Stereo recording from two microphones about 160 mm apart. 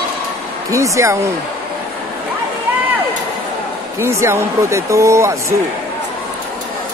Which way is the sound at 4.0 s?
15° right (ahead or behind).